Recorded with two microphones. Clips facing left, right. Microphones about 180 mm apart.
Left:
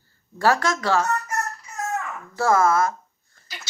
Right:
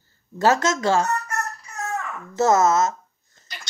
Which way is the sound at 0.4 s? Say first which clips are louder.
Right 2 dB; 20° right (ahead or behind).